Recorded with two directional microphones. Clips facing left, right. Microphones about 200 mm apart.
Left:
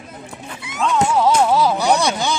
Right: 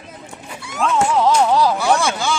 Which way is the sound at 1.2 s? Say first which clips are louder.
Even; 5° left (ahead or behind).